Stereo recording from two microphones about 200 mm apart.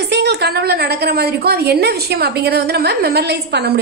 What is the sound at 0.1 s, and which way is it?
A woman's voice, 55° right (ahead or behind).